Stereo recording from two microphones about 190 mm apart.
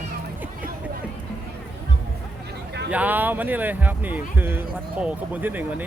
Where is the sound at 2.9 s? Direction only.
10° right (ahead or behind).